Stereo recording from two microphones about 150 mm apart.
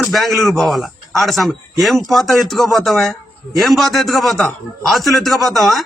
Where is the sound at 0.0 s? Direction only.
Centre (ahead or behind).